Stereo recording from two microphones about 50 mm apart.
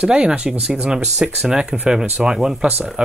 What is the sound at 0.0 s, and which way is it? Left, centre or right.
Speech, right.